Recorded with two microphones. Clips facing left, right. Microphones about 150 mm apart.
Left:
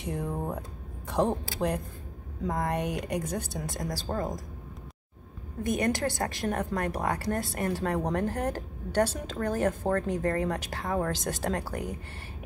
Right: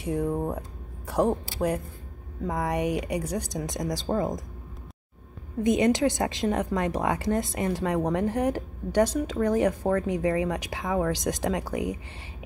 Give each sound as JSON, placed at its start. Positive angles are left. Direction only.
{"t": 0.0, "sound": "a man's voice", "side_deg": -5}
{"t": 5.6, "sound": "speech", "side_deg": -20}